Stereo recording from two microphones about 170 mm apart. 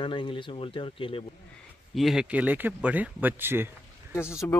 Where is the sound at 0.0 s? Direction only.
30° left (ahead or behind).